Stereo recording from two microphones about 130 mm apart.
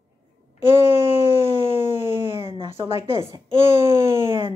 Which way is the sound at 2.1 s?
45° right (ahead or behind).